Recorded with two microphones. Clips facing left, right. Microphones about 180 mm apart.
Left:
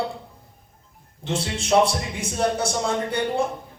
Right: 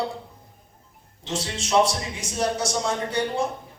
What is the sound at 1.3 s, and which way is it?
Speech, 60° left (ahead or behind).